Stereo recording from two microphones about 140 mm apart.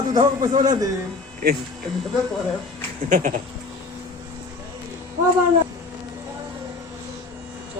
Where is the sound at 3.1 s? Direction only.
70° right (ahead or behind).